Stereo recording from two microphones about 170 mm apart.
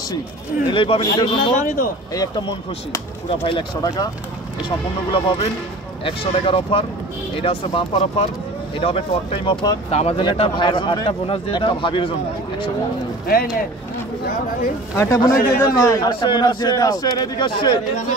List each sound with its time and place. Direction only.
0.7 s speech: 30° left (ahead or behind)
1.6 s a man's voice: 50° left (ahead or behind)
2.1 s speech: 25° left (ahead or behind)
13.3 s speech: 60° left (ahead or behind)
15.0 s speech: 20° left (ahead or behind)